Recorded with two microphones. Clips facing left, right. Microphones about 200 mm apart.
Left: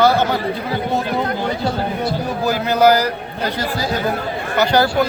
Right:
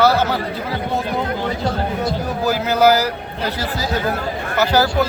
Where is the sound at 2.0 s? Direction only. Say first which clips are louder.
Even; 5° right (ahead or behind).